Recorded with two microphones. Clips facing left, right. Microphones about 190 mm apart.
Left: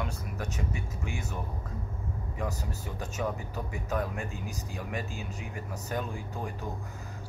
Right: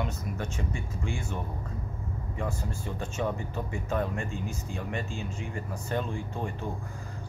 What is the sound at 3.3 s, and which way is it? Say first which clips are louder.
Speech: right 3 dB; 5° left (ahead or behind).